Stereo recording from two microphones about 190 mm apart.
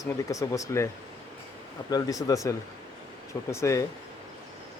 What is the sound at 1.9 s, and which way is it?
Speech, 20° left (ahead or behind).